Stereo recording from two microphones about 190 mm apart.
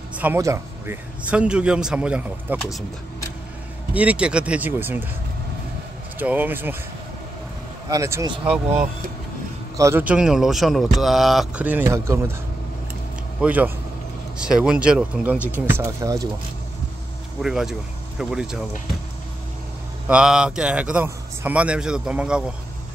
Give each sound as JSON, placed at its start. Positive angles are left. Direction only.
{"t": 0.2, "sound": "a man's voice", "side_deg": -15}
{"t": 3.9, "sound": "a man's voice", "side_deg": -5}
{"t": 6.1, "sound": "a man's voice", "side_deg": -10}
{"t": 7.9, "sound": "a man's voice", "side_deg": -20}
{"t": 9.8, "sound": "speech", "side_deg": -15}
{"t": 13.4, "sound": "a man's voice", "side_deg": -10}
{"t": 17.4, "sound": "speech", "side_deg": 0}
{"t": 20.1, "sound": "speech", "side_deg": -5}